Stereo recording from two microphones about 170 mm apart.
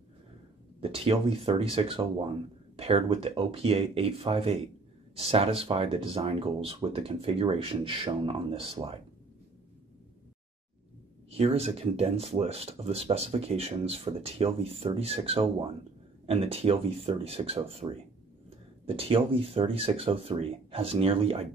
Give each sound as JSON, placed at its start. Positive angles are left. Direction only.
{"t": 0.8, "sound": "speech", "side_deg": -35}
{"t": 11.2, "sound": "speech", "side_deg": -35}